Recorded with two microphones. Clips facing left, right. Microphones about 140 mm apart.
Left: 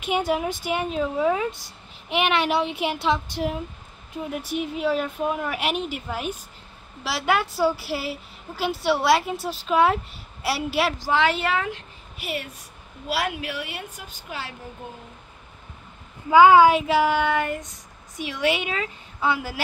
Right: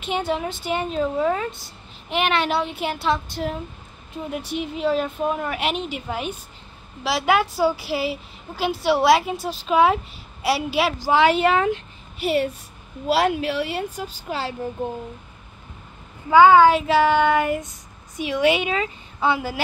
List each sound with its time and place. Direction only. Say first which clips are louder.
0.0 s child singing: left 1 dB; 10° left (ahead or behind)
4.3 s a woman's voice: right 1 dB; 5° left (ahead or behind); by 14.5 s 30° right (ahead or behind)
16.3 s child singing: right 1 dB; 10° left (ahead or behind)
18.1 s speech: right 5 dB; centre (ahead or behind)